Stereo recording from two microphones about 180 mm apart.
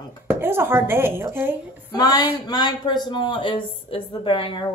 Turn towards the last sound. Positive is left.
turn(degrees=30)  # may be behind; listen again after turning